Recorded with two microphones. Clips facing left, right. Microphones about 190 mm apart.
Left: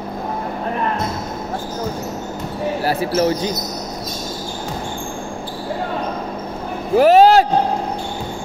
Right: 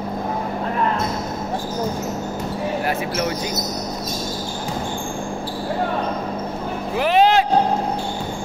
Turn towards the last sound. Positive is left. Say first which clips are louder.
# left 6 dB
turn(degrees=40)  # may be behind; listen again after turning